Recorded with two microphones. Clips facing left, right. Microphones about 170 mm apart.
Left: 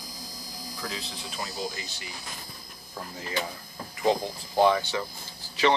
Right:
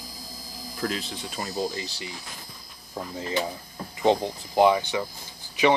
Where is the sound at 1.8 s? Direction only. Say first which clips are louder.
Right 6 dB; 30° right (ahead or behind).